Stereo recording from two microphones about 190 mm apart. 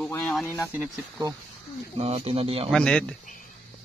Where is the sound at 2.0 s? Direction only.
35° right (ahead or behind).